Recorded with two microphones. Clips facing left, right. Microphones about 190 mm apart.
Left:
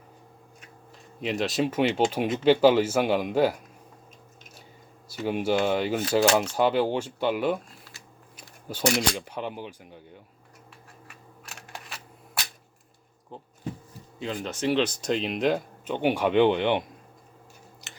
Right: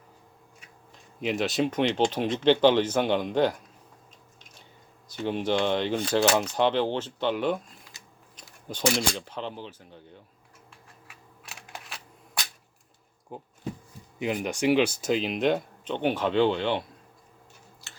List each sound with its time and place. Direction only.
1.2 s speech: centre (ahead or behind)
5.0 s speech: 10° left (ahead or behind)
11.1 s camera: centre (ahead or behind)
13.3 s speech: 10° right (ahead or behind); by 16.8 s 15° left (ahead or behind)
17.8 s a sound: 20° left (ahead or behind)